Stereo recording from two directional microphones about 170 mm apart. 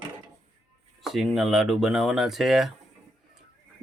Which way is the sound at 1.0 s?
Centre (ahead or behind).